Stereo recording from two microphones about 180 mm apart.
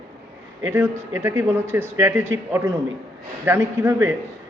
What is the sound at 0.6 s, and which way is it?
Speech, 15° right (ahead or behind).